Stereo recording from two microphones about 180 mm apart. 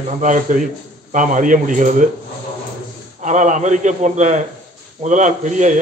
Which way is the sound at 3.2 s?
45° right (ahead or behind).